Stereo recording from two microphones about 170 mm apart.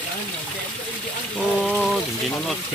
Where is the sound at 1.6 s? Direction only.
Centre (ahead or behind).